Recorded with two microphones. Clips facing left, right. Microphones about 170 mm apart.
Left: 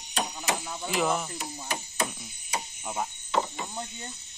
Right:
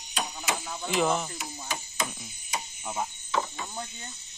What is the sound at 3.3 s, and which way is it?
Cricket, 20° left (ahead or behind).